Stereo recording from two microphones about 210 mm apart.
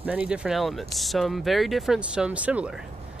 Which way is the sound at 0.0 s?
5° right (ahead or behind).